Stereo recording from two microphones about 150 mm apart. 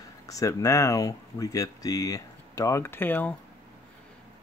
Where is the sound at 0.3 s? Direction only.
25° left (ahead or behind).